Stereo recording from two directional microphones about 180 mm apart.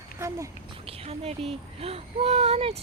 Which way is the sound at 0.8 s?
35° right (ahead or behind).